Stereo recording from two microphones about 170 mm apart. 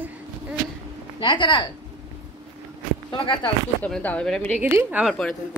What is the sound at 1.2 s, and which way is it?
Speech, 30° left (ahead or behind).